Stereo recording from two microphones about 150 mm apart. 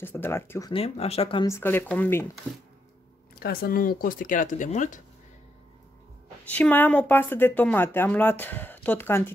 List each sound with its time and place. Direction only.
0.0 s speech: 15° left (ahead or behind)
0.7 s speech: 40° left (ahead or behind)
1.4 s speech: 15° left (ahead or behind)
3.3 s speech: 80° left; by 5.0 s 55° left (ahead or behind)
6.4 s speech: 10° left (ahead or behind)